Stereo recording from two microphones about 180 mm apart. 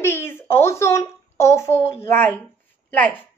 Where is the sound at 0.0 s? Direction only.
10° left (ahead or behind).